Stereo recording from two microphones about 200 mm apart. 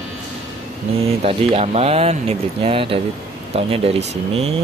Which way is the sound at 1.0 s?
30° right (ahead or behind).